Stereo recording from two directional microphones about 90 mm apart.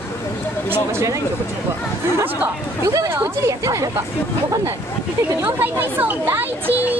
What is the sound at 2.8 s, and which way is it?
Speech, 35° right (ahead or behind).